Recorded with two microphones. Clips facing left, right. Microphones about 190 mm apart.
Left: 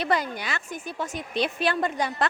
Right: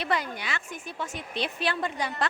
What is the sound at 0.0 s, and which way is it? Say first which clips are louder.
A woman's voice: left 4 dB; 40° left (ahead or behind).